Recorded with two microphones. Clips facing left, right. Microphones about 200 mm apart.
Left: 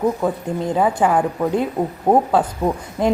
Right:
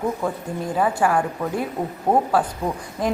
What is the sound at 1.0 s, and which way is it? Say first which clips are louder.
A woman's voice: left 3 dB; 20° left (ahead or behind).